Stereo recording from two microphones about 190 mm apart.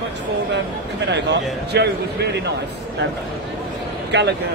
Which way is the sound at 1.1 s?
65° right (ahead or behind).